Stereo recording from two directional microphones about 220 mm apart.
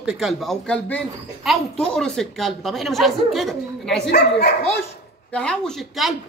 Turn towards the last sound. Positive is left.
turn(degrees=0)  # may be behind; listen again after turning